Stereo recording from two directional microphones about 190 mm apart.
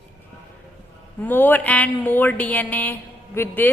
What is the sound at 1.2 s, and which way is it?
A woman's voice, 10° left (ahead or behind).